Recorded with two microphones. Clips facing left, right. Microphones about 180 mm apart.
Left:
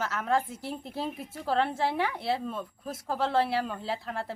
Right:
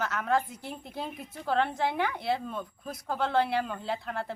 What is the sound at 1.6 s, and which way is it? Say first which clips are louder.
Speech: left 1 dB; 30° left (ahead or behind).